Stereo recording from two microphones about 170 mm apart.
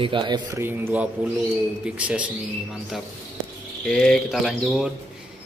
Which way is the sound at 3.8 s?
5° left (ahead or behind).